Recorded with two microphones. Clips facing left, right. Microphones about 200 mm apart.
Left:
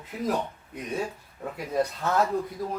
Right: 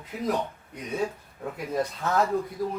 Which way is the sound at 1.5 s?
Centre (ahead or behind).